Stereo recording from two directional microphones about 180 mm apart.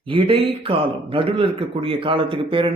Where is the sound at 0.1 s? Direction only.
30° right (ahead or behind).